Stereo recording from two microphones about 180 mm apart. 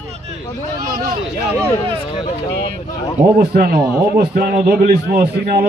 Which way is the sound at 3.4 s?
60° right (ahead or behind).